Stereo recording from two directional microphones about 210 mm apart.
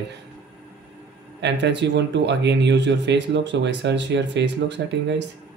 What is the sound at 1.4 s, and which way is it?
Speech, 55° right (ahead or behind).